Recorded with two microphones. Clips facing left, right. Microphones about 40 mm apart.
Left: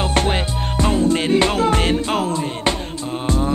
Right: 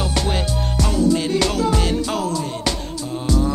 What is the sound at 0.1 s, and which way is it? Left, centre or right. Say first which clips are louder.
Music: left 3 dB; left.